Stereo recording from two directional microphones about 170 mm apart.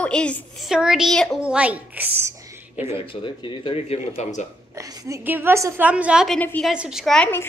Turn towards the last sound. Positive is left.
turn(degrees=5)  # may be behind; listen again after turning